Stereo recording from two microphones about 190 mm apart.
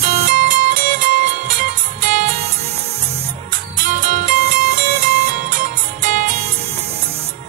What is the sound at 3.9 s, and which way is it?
Music, 45° right (ahead or behind).